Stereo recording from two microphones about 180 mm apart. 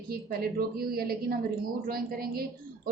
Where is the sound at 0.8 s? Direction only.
55° right (ahead or behind).